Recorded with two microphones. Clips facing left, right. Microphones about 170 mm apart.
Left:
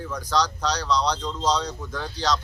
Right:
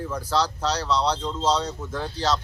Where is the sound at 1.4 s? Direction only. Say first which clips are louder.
Right 1 dB; 5° right (ahead or behind).